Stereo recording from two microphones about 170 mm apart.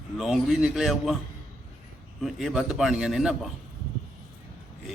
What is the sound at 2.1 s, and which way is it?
A man's voice, centre (ahead or behind).